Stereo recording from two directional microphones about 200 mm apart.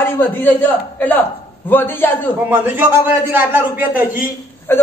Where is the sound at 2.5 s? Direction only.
10° right (ahead or behind).